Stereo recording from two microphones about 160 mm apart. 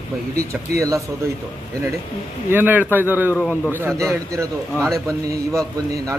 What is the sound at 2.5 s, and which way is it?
A man's voice, 10° right (ahead or behind).